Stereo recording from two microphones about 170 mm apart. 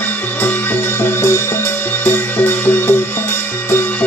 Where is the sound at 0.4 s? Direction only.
10° left (ahead or behind).